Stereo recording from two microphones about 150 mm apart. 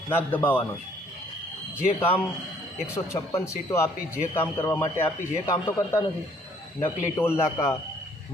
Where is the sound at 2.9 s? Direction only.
20° left (ahead or behind).